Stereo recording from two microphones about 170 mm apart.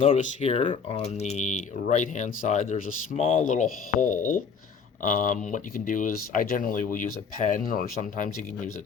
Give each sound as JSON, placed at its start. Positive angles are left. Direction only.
{"t": 0.2, "sound": "speech", "side_deg": 35}